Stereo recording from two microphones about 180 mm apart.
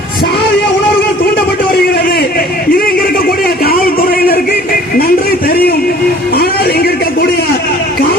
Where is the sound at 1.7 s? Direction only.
60° left (ahead or behind).